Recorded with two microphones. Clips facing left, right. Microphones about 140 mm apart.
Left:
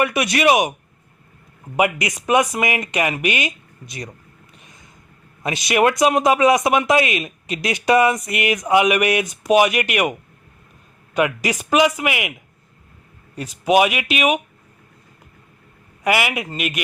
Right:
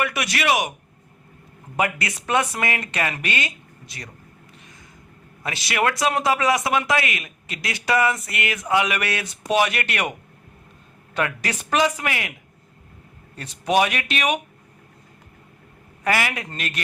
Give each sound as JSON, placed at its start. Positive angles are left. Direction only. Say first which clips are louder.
{"t": 0.0, "sound": "speech", "louder": "left 6 dB", "side_deg": 20}
{"t": 1.7, "sound": "speech", "louder": "left 5 dB", "side_deg": 15}
{"t": 5.4, "sound": "speech", "louder": "left 6 dB", "side_deg": 20}
{"t": 13.3, "sound": "speech", "louder": "left 4 dB", "side_deg": 10}
{"t": 16.0, "sound": "speech", "louder": "left 3 dB", "side_deg": 10}